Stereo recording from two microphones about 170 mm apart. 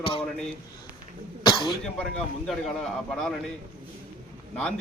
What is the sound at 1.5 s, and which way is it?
Cough, 30° left (ahead or behind).